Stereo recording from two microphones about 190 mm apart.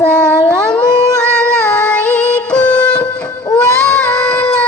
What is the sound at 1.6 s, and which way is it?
Music, 10° left (ahead or behind).